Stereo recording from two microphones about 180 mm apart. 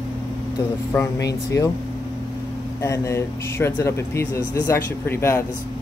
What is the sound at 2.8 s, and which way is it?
Speech, 15° left (ahead or behind).